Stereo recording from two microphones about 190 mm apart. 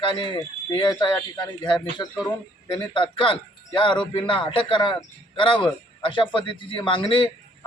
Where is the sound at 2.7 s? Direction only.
25° left (ahead or behind).